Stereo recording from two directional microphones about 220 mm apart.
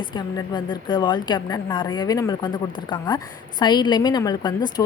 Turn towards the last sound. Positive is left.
turn(degrees=20)  # may be behind; listen again after turning